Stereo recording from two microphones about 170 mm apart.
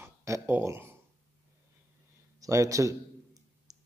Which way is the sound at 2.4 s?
20° right (ahead or behind).